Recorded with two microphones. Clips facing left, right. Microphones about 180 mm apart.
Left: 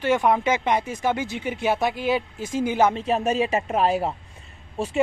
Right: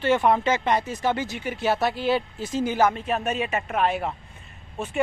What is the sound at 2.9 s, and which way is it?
Speech, 30° left (ahead or behind).